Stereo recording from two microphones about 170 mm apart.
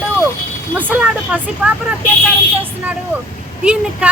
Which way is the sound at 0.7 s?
5° right (ahead or behind).